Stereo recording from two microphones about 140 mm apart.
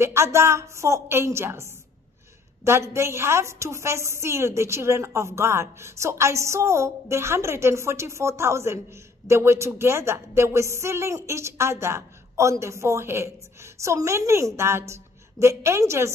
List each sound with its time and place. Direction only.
0.0 s a woman's voice: 20° right (ahead or behind)